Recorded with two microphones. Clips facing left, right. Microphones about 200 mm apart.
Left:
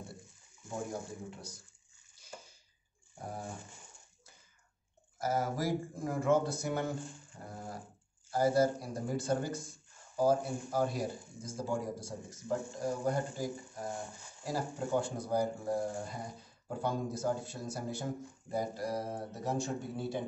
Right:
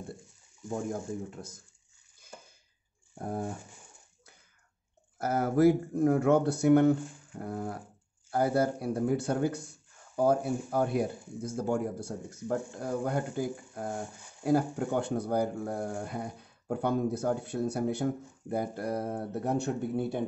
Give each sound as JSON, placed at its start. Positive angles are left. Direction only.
{"t": 1.3, "sound": "speech", "side_deg": -50}
{"t": 3.2, "sound": "dog", "side_deg": -55}
{"t": 5.2, "sound": "speech", "side_deg": -60}